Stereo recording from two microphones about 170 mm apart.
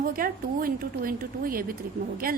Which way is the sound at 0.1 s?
60° right (ahead or behind).